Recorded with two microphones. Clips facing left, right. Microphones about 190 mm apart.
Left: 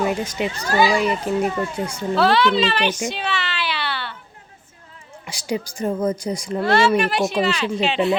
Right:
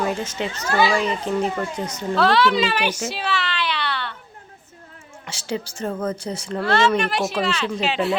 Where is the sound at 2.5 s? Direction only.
10° right (ahead or behind).